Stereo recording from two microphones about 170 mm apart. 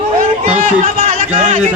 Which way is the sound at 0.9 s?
45° right (ahead or behind).